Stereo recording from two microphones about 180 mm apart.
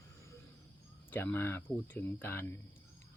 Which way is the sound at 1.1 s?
10° left (ahead or behind).